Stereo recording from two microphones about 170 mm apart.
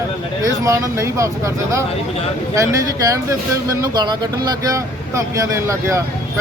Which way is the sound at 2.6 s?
20° right (ahead or behind).